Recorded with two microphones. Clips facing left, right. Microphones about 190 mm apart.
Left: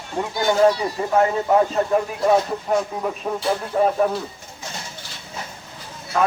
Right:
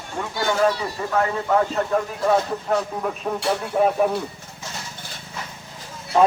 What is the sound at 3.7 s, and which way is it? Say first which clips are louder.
Speech: even; 5° right (ahead or behind).